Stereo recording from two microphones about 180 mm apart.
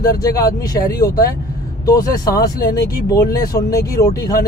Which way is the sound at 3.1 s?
20° left (ahead or behind).